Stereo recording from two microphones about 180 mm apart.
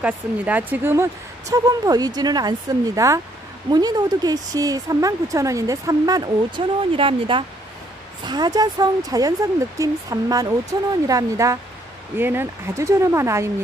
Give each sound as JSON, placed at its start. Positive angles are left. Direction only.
{"t": 0.0, "sound": "speech", "side_deg": -10}